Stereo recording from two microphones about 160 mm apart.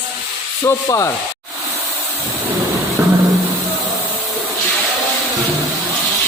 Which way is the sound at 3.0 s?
15° right (ahead or behind).